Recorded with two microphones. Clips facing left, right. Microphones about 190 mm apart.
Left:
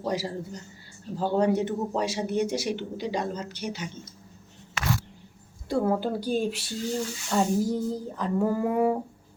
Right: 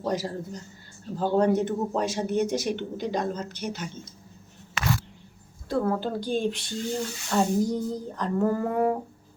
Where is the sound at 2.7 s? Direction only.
50° right (ahead or behind).